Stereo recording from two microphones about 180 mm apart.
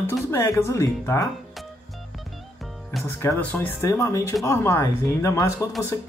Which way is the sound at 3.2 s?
10° left (ahead or behind).